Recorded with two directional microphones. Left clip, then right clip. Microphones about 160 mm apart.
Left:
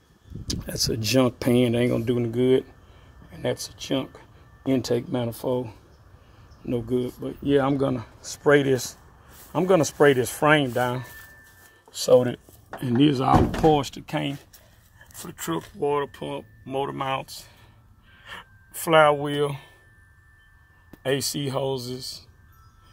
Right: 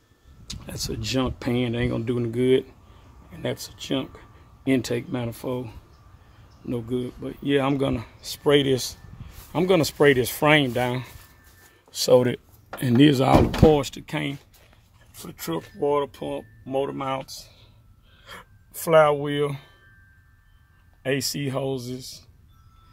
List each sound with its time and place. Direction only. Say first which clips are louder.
0.5 s speech: left 6 dB; 25° left (ahead or behind)
1.9 s speech: left 3 dB; 10° left (ahead or behind)
2.1 s speech: right 2 dB; centre (ahead or behind); by 11.1 s 20° right (ahead or behind)
11.9 s speech: even; 35° right (ahead or behind)
14.0 s speech: left 1 dB; centre (ahead or behind)
16.6 s speech: right 1 dB; 15° left (ahead or behind)
18.2 s speech: left 2 dB; 5° left (ahead or behind)
21.0 s speech: even; 10° left (ahead or behind)